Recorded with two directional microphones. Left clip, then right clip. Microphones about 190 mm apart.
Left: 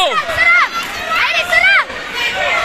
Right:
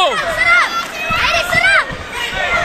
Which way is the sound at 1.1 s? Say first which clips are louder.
Left 1 dB; 35° left (ahead or behind).